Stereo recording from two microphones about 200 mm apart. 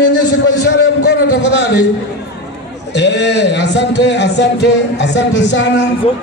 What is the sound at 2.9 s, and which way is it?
A man's voice, 60° left (ahead or behind).